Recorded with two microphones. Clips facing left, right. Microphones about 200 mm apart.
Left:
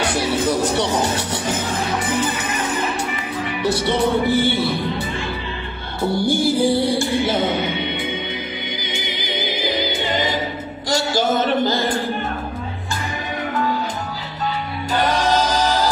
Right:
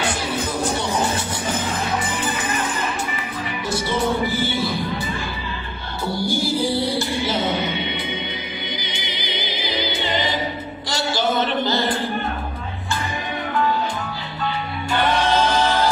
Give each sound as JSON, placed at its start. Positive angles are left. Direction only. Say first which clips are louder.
{"t": 0.1, "sound": "music", "louder": "left 6 dB", "side_deg": 75}
{"t": 3.7, "sound": "music", "louder": "left 2 dB", "side_deg": 65}
{"t": 6.1, "sound": "music", "louder": "left 4 dB", "side_deg": 55}
{"t": 8.8, "sound": "music", "louder": "left 3 dB", "side_deg": 50}
{"t": 10.9, "sound": "a sound", "louder": "left 3 dB", "side_deg": 45}
{"t": 14.9, "sound": "music", "louder": "left 1 dB", "side_deg": 40}